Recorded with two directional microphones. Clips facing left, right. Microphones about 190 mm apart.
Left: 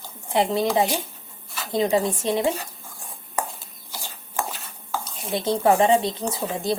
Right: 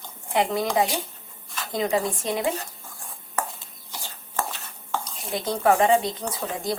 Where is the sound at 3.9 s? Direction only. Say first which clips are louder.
Left 1 dB; 10° left (ahead or behind).